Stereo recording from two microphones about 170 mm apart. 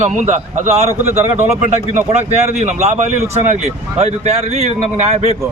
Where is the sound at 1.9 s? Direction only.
40° right (ahead or behind).